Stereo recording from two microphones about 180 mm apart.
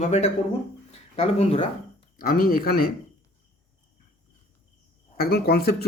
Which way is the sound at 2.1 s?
55° left (ahead or behind).